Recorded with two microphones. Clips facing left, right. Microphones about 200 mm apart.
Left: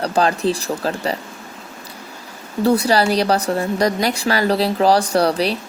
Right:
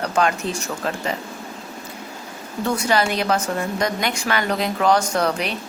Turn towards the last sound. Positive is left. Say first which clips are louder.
# left 5 dB
turn(degrees=35)  # may be behind; listen again after turning